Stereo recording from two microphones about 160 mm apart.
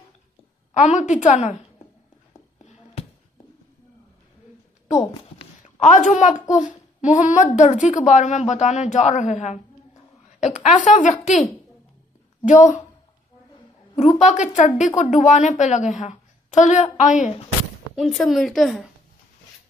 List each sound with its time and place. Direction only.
0.7 s a woman's voice: 50° left (ahead or behind)
2.6 s a sound: 45° left (ahead or behind)
5.4 s a sound: 50° left (ahead or behind)
6.5 s a child's voice: 50° left (ahead or behind)
12.4 s a woman's voice: 50° left (ahead or behind)
13.9 s a woman's voice: 45° left (ahead or behind)
17.9 s a woman's voice: centre (ahead or behind)